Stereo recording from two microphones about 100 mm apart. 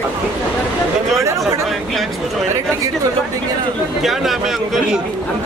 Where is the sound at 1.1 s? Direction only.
30° right (ahead or behind).